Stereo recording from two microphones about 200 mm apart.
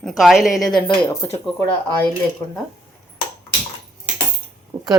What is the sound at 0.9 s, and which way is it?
Speech, 20° left (ahead or behind).